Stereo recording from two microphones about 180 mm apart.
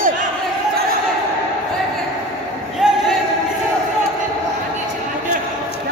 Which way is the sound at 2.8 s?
5° right (ahead or behind).